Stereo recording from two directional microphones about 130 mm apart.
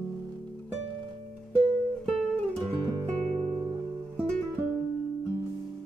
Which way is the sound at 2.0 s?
5° left (ahead or behind).